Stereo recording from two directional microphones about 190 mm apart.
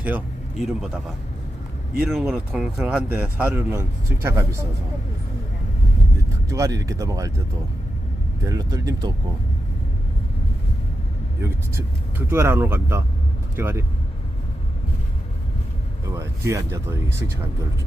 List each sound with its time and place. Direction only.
2.0 s speech: 5° right (ahead or behind)
6.5 s speech: 15° right (ahead or behind)
8.4 s speech: 20° right (ahead or behind)
11.4 s speech: 10° right (ahead or behind)
16.1 s speech: 15° right (ahead or behind)